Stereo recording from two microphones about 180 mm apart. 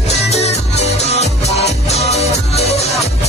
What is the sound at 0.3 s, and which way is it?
Music, 35° left (ahead or behind).